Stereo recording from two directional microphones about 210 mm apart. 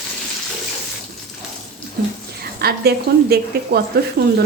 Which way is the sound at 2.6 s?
50° right (ahead or behind).